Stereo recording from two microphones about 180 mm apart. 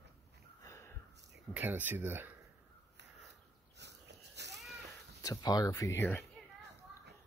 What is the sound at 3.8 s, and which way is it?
Wheeze, 70° right (ahead or behind).